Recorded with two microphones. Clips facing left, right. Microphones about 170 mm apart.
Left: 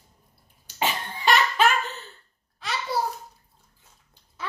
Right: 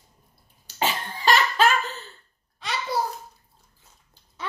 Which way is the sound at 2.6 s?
Centre (ahead or behind).